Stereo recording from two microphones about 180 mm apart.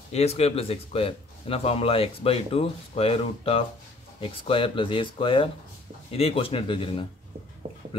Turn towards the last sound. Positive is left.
turn(degrees=30)  # may be behind; listen again after turning